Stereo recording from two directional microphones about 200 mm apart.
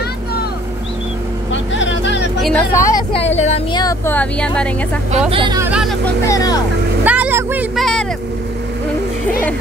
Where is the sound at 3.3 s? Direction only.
35° left (ahead or behind).